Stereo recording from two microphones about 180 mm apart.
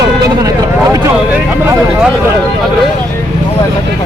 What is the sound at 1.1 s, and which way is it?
Speech, 5° right (ahead or behind).